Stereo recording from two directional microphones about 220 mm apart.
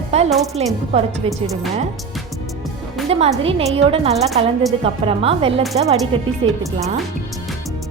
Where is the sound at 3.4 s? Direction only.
25° right (ahead or behind).